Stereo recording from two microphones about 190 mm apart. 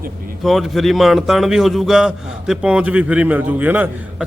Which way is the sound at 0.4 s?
Centre (ahead or behind).